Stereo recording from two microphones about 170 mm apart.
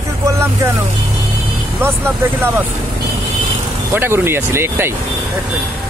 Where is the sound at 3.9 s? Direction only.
15° right (ahead or behind).